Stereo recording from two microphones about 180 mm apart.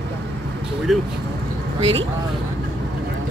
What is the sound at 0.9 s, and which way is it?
Speech, centre (ahead or behind).